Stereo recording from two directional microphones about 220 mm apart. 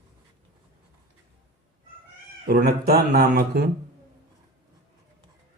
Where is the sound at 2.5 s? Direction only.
45° right (ahead or behind).